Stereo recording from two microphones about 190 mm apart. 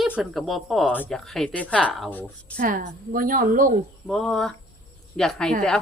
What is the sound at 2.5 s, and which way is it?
A woman's voice, 50° right (ahead or behind).